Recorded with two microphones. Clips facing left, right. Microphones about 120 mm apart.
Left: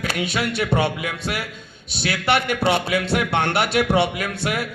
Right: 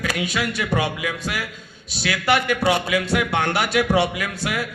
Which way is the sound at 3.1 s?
25° left (ahead or behind).